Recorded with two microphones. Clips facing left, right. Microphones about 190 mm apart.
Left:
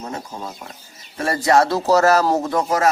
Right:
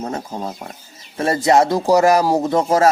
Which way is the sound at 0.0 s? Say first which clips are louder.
Right 5 dB; 35° right (ahead or behind).